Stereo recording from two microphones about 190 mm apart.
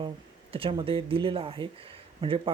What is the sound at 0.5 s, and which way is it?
Speech, 30° right (ahead or behind).